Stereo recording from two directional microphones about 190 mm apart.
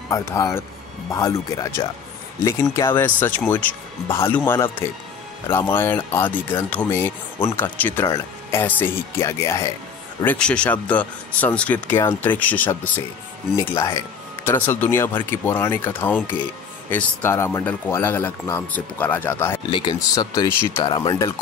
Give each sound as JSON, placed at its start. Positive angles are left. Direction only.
{"t": 0.1, "sound": "speech", "side_deg": 15}
{"t": 19.7, "sound": "speech", "side_deg": 25}